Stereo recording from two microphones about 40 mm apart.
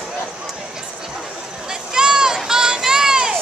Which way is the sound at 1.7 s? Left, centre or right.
Centre.